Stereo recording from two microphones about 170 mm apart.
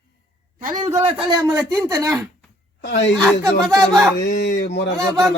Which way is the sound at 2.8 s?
90° left.